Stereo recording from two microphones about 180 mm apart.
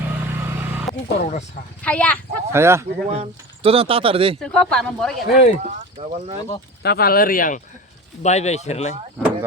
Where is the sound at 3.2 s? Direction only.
30° right (ahead or behind).